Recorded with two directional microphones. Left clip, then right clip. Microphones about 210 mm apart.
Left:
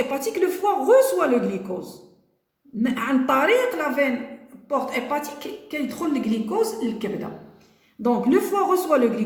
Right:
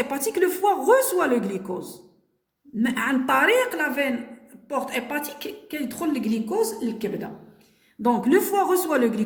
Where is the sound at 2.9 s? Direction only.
45° right (ahead or behind).